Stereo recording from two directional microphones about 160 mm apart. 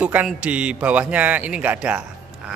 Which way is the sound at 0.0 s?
10° right (ahead or behind).